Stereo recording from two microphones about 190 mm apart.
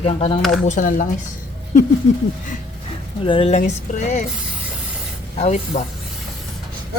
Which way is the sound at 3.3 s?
30° left (ahead or behind).